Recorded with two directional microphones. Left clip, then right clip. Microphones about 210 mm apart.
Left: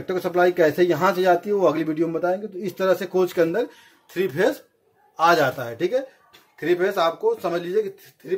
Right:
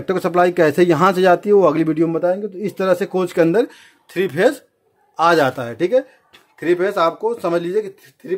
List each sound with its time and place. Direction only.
0.0 s speech: 45° right (ahead or behind)
5.1 s speech: 55° right (ahead or behind)